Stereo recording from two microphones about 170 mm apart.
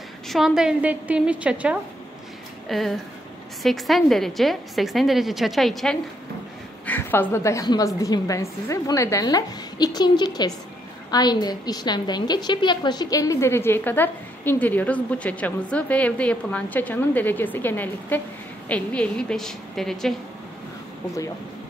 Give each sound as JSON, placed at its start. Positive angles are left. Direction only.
{"t": 0.3, "sound": "a woman's voice", "side_deg": -5}
{"t": 6.9, "sound": "a woman's voice", "side_deg": 10}